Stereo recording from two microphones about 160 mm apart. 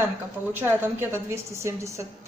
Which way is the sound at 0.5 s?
15° right (ahead or behind).